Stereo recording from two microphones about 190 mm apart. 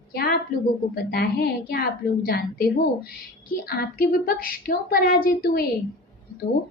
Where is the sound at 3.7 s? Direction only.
50° left (ahead or behind).